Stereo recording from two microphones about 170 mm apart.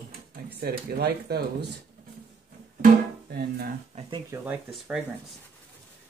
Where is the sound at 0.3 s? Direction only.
60° right (ahead or behind).